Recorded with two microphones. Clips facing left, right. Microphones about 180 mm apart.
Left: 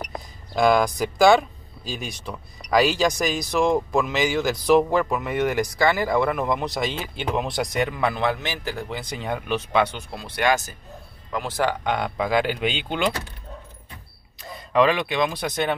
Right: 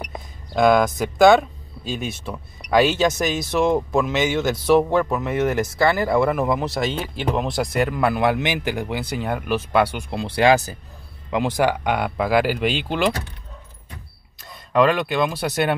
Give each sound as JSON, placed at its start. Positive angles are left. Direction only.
{"t": 0.0, "sound": "a sound", "side_deg": 0}
{"t": 1.9, "sound": "speech", "side_deg": 0}
{"t": 10.1, "sound": "speech", "side_deg": -30}
{"t": 11.2, "sound": "speech", "side_deg": -15}
{"t": 14.4, "sound": "speech", "side_deg": 0}